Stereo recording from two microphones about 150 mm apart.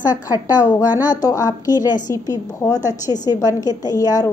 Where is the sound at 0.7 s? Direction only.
20° left (ahead or behind).